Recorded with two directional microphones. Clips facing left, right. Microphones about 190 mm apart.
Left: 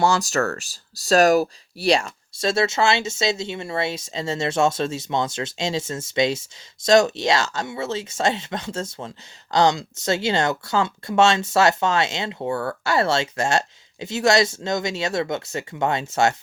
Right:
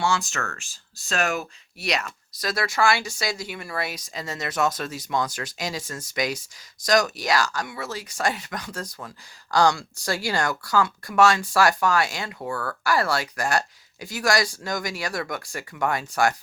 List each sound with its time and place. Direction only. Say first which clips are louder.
0.0 s speech: left 6 dB; 40° left (ahead or behind); by 16.3 s 25° left (ahead or behind)